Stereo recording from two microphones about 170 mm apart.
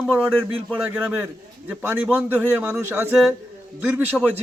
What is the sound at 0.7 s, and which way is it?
Speech, 10° right (ahead or behind).